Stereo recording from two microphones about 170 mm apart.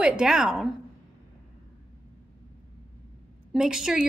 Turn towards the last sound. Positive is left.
turn(degrees=-5)  # may be behind; listen again after turning